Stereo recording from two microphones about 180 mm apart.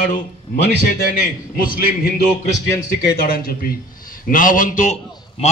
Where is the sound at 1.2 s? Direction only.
50° left (ahead or behind).